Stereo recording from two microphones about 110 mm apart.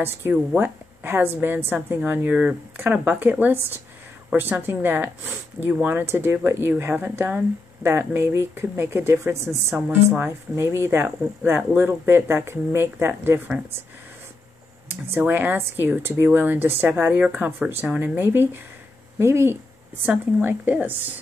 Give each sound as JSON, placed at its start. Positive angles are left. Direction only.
{"t": 0.0, "sound": "a woman's voice", "side_deg": -20}
{"t": 15.1, "sound": "a woman's voice", "side_deg": -15}